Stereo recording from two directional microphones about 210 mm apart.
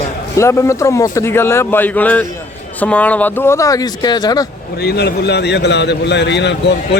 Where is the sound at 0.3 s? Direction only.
15° left (ahead or behind).